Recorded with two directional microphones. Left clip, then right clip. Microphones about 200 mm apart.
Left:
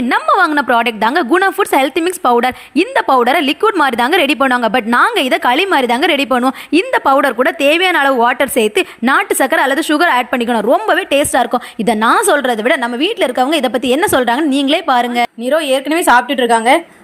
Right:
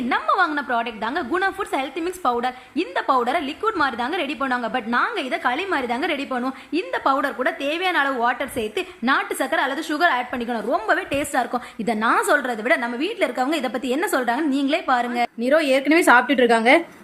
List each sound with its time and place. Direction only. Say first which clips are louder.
0.1 s a woman's voice: left 8 dB; 45° left (ahead or behind)
15.4 s a woman's voice: left 1 dB; centre (ahead or behind)